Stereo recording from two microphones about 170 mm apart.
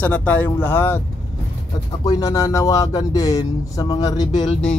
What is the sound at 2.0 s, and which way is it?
Speech, 20° left (ahead or behind).